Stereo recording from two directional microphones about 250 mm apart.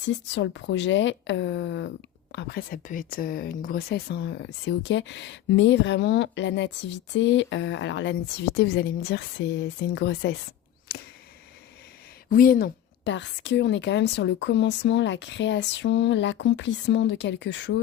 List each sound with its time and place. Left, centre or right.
0.3 s a woman's voice: left
12.3 s speech: left